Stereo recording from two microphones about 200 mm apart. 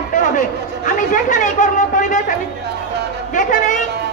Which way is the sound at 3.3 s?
40° left (ahead or behind).